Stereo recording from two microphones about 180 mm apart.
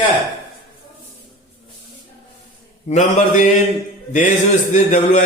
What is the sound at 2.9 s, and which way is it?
Mantra, 40° left (ahead or behind).